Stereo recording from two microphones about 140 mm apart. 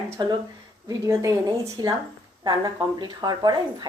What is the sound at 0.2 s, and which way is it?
Speech, 35° right (ahead or behind).